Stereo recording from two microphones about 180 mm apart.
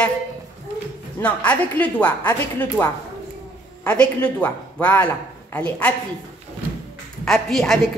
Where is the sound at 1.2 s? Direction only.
10° left (ahead or behind).